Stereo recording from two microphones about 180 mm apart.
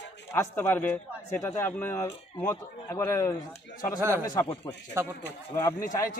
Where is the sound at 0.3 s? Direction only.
15° left (ahead or behind).